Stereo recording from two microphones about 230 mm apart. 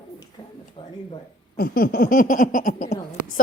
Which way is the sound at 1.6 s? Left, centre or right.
Left.